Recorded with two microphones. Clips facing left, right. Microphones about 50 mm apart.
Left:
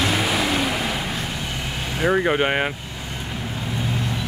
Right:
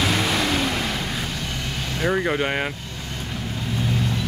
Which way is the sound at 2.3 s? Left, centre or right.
Left.